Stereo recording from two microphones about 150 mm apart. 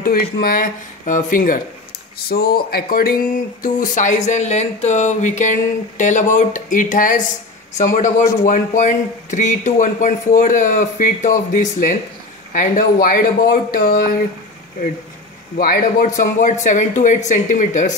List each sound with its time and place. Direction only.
0.0 s speech: 80° left; by 1.6 s 60° left (ahead or behind)
2.1 s speech: 90° left
3.6 s speech: 60° left (ahead or behind); by 14.2 s 85° left
15.5 s speech: 80° left
16.2 s speech: 55° left (ahead or behind)